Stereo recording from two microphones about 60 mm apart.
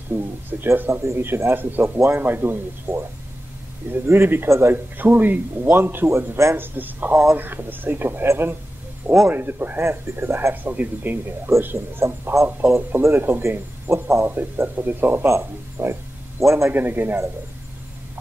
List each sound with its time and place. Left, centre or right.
0.1 s a man's voice: right
4.1 s a man's voice: right
4.9 s a man's voice: right
6.0 s a man's voice: right
10.5 s a man's voice: right
15.8 s a sound: right
16.7 s a man's voice: right